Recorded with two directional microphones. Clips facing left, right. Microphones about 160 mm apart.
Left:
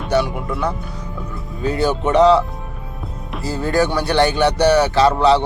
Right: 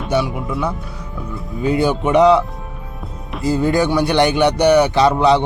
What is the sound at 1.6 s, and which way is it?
Speech, 10° right (ahead or behind).